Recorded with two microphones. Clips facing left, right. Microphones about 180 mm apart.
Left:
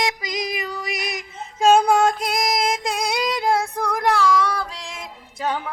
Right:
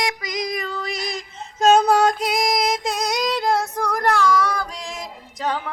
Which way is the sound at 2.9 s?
10° left (ahead or behind).